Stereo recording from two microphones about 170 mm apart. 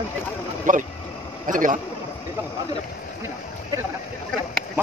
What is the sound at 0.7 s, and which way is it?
Speech, 50° right (ahead or behind).